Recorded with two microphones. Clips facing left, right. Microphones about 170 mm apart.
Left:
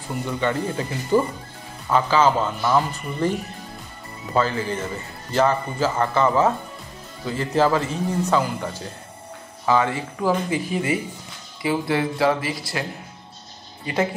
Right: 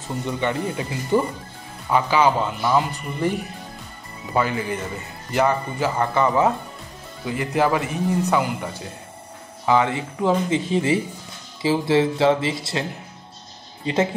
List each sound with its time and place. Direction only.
0.0 s speech: 20° right (ahead or behind)
4.3 s speech: 15° right (ahead or behind)
9.7 s speech: 20° right (ahead or behind)